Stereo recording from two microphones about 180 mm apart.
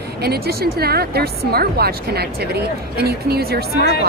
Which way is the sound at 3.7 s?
60° left (ahead or behind).